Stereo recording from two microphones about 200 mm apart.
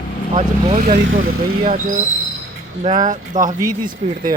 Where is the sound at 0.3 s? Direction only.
40° right (ahead or behind).